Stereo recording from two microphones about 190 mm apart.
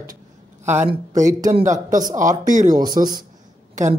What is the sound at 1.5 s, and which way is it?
A man's voice, 40° right (ahead or behind).